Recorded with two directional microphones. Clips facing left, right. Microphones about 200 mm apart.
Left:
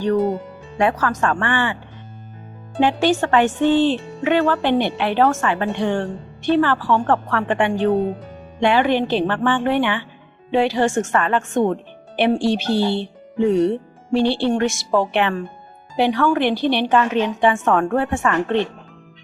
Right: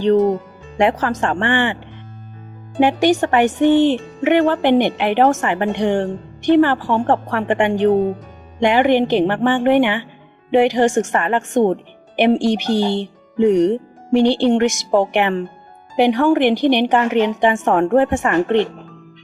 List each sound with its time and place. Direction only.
0.0 s speech: 20° right (ahead or behind)
2.8 s a woman's voice: 15° right (ahead or behind)